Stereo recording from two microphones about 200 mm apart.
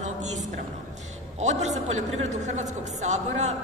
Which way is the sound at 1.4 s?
35° right (ahead or behind).